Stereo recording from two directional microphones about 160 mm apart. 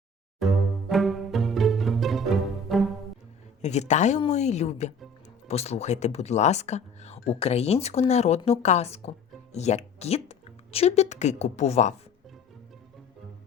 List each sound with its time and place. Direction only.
0.9 s music: centre (ahead or behind)
3.6 s speech: 45° left (ahead or behind)